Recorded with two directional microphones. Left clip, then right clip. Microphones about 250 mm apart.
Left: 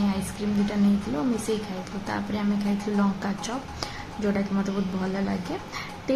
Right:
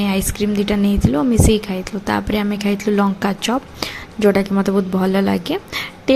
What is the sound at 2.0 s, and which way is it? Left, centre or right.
A woman's voice, right.